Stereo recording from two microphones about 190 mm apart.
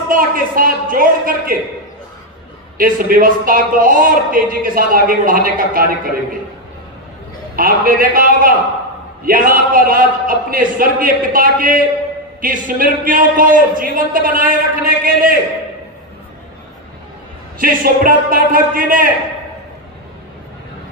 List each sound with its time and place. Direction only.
0.1 s a man's voice: 50° right (ahead or behind)
2.8 s a man's voice: 50° right (ahead or behind)
7.5 s a man's voice: 45° right (ahead or behind)
17.6 s a man's voice: 50° right (ahead or behind)